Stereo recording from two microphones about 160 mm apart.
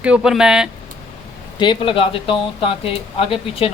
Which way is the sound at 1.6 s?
30° left (ahead or behind).